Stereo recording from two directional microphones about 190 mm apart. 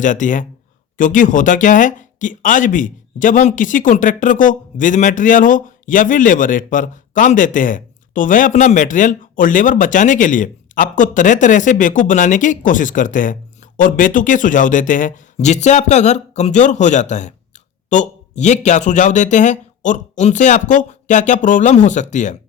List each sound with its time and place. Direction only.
0.0 s a man's voice: 40° left (ahead or behind)